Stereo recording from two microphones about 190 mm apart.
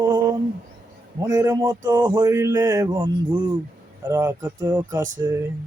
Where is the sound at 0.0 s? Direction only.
20° right (ahead or behind).